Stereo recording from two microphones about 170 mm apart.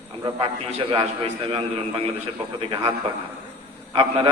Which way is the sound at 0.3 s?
30° right (ahead or behind).